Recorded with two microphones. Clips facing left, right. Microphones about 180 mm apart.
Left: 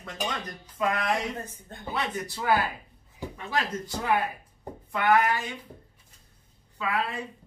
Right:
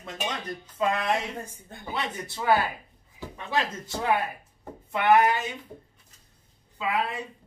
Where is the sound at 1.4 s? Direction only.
10° right (ahead or behind).